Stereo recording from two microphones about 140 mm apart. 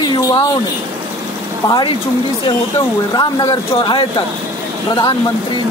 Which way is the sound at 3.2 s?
30° left (ahead or behind).